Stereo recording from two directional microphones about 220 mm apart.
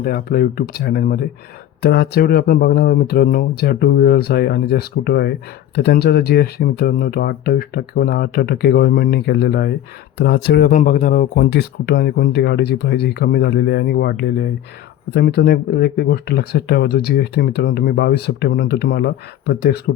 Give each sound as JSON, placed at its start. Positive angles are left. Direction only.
{"t": 0.0, "sound": "speech", "side_deg": 45}